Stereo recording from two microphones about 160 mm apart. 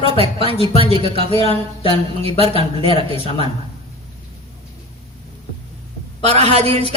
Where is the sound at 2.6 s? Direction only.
35° right (ahead or behind).